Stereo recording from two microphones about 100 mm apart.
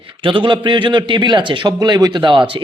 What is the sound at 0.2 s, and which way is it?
A man's voice, 55° right (ahead or behind).